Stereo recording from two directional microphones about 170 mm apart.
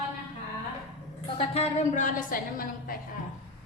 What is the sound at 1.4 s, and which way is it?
A woman's voice, 35° left (ahead or behind).